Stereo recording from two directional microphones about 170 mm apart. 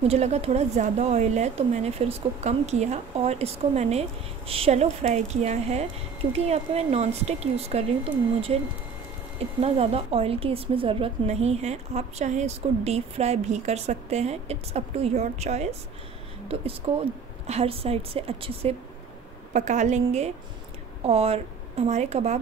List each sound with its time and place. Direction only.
0.1 s a woman's voice: 40° right (ahead or behind)
9.6 s a woman's voice: 35° right (ahead or behind)